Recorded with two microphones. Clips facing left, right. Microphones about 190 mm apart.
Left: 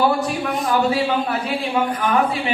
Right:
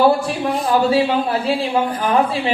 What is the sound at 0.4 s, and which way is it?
Speech, 30° right (ahead or behind).